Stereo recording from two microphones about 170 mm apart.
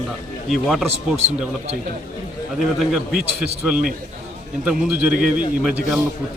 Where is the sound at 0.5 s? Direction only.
Centre (ahead or behind).